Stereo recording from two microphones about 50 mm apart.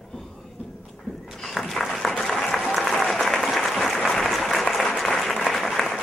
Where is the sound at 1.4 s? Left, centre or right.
Centre.